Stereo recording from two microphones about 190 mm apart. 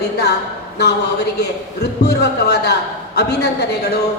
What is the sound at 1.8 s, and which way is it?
A woman's voice, 60° left (ahead or behind).